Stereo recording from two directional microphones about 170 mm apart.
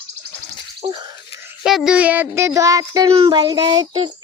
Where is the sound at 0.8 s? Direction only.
30° right (ahead or behind).